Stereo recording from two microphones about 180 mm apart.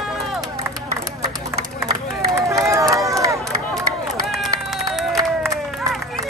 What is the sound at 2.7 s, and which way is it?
Run, 20° right (ahead or behind).